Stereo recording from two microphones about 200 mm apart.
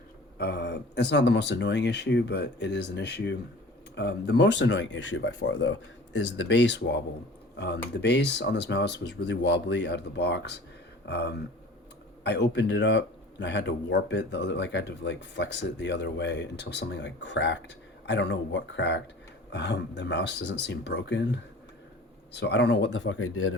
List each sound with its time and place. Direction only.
0.3 s speech: 55° left (ahead or behind); by 5.7 s 85° left
6.1 s speech: 70° left (ahead or behind)
8.0 s speech: 60° left (ahead or behind); by 23.6 s 90° left